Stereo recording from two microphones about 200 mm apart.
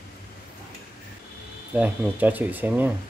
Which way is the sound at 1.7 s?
10° right (ahead or behind).